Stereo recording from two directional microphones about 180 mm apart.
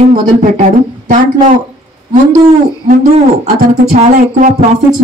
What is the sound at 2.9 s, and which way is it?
Speech, 45° right (ahead or behind).